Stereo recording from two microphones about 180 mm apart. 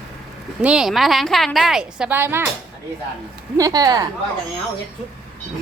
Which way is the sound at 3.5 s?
20° right (ahead or behind).